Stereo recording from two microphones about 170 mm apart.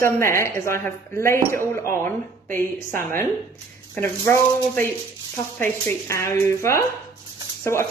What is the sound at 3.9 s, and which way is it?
A woman's voice, 10° left (ahead or behind).